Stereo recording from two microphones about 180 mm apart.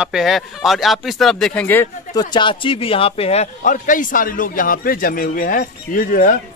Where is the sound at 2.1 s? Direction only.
25° left (ahead or behind).